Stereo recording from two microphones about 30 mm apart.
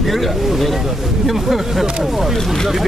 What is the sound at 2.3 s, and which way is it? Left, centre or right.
Speech, centre.